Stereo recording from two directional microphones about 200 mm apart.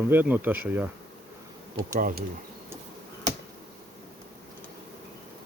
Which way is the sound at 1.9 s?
45° right (ahead or behind).